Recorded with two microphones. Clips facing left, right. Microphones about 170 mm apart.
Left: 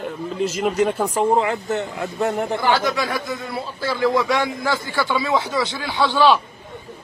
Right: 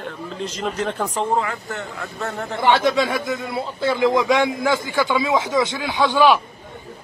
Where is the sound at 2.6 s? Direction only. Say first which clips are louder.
Right 7 dB; 25° right (ahead or behind).